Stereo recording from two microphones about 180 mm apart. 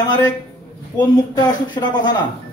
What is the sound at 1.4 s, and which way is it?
Speech, 25° left (ahead or behind).